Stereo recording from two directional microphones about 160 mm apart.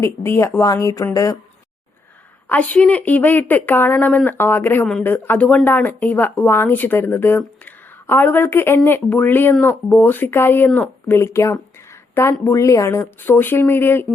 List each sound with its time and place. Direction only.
0.0 s speech: 15° left (ahead or behind)
2.5 s speech: 10° left (ahead or behind)